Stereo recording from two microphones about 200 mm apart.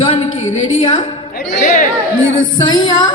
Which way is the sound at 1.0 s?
30° left (ahead or behind).